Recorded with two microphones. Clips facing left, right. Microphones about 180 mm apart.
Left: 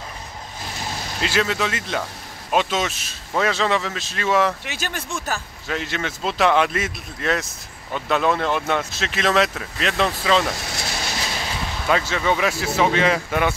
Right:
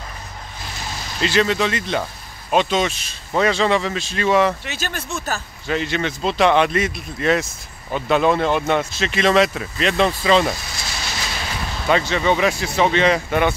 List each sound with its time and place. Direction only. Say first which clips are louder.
1.2 s speech: right 4 dB; 5° left (ahead or behind)
4.6 s speech: right 1 dB; 15° left (ahead or behind)
5.7 s speech: right 5 dB; centre (ahead or behind)
10.5 s a sound: left 1 dB; 70° left (ahead or behind)
11.0 s train: right 1 dB; 40° left (ahead or behind)
11.3 s a sound: even; 20° left (ahead or behind)
11.8 s speech: right 3 dB; 5° left (ahead or behind)